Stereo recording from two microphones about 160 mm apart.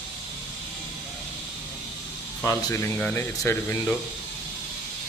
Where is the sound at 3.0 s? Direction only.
5° left (ahead or behind).